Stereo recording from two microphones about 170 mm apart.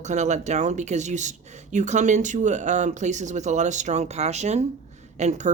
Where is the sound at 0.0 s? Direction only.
40° right (ahead or behind).